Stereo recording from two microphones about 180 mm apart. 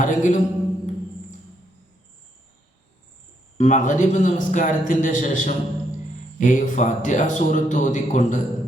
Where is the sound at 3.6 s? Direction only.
40° left (ahead or behind).